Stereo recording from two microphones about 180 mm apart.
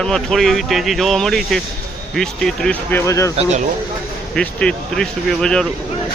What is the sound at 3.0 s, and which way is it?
Speech, 15° left (ahead or behind).